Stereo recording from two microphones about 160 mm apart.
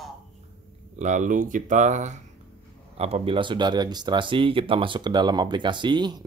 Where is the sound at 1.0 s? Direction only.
50° right (ahead or behind).